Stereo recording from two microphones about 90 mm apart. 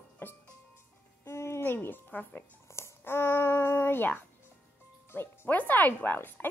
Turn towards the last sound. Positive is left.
turn(degrees=20)  # may be behind; listen again after turning